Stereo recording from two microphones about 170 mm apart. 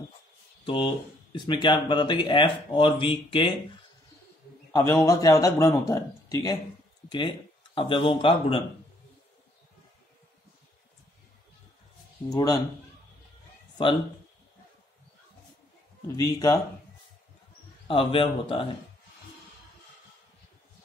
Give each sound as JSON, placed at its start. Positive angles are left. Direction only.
{"t": 0.7, "sound": "speech", "side_deg": 30}
{"t": 4.7, "sound": "speech", "side_deg": 20}
{"t": 12.3, "sound": "speech", "side_deg": 20}
{"t": 16.2, "sound": "speech", "side_deg": 20}
{"t": 17.8, "sound": "speech", "side_deg": 30}